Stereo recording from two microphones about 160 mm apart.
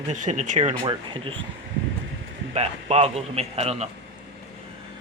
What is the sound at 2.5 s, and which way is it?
A man's voice, 40° right (ahead or behind).